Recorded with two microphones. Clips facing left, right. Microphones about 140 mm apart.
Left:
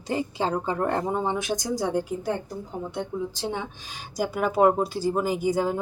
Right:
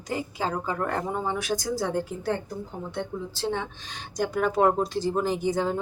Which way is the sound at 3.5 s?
10° left (ahead or behind).